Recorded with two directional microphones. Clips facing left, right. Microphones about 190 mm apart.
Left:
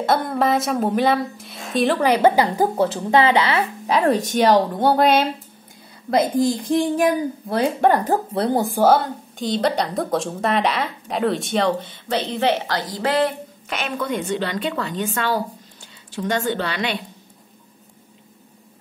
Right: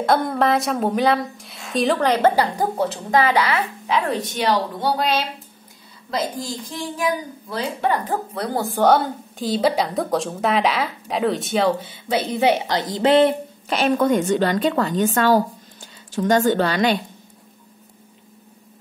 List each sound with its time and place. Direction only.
0.0 s a woman's voice: centre (ahead or behind)
2.6 s a woman's voice: 30° left (ahead or behind); by 8.2 s 50° left (ahead or behind)
8.4 s speech: 25° left (ahead or behind)
8.6 s a woman's voice: 5° left (ahead or behind); by 13.3 s 20° right (ahead or behind)
13.7 s a woman's voice: 35° right (ahead or behind)